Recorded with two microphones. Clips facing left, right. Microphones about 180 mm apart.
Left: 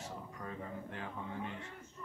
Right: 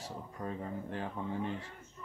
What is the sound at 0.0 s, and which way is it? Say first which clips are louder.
Speech: right 4 dB; 30° right (ahead or behind).